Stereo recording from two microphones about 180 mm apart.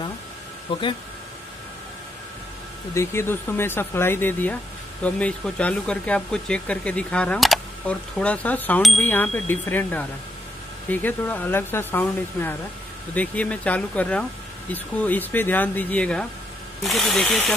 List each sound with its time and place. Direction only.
0.7 s speech: 30° left (ahead or behind)
2.9 s speech: 15° left (ahead or behind)